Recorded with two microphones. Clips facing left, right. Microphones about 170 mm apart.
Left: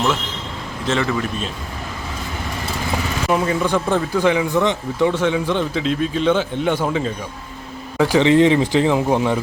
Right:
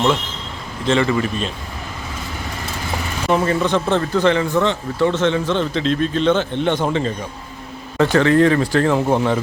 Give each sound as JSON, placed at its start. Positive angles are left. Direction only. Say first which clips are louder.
{"t": 0.9, "sound": "speech", "louder": "right 3 dB", "side_deg": 0}
{"t": 3.2, "sound": "speech", "louder": "right 2 dB", "side_deg": 5}
{"t": 7.9, "sound": "speech", "louder": "even", "side_deg": 10}